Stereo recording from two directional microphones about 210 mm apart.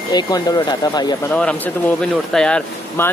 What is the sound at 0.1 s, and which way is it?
Speech, 20° left (ahead or behind).